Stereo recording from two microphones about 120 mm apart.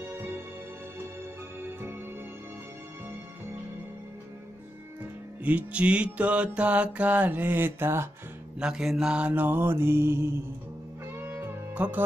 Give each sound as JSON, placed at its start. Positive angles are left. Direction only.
{"t": 1.6, "sound": "music", "side_deg": -20}
{"t": 5.4, "sound": "mantra", "side_deg": -15}
{"t": 8.5, "sound": "mantra", "side_deg": -5}
{"t": 11.1, "sound": "music", "side_deg": -20}